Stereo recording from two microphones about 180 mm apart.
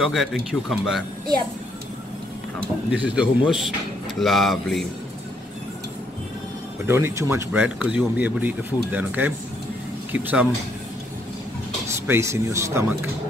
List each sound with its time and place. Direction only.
0.0 s speech: centre (ahead or behind)
2.9 s speech: 5° right (ahead or behind)
6.9 s speech: 15° right (ahead or behind)
12.1 s speech: 15° right (ahead or behind)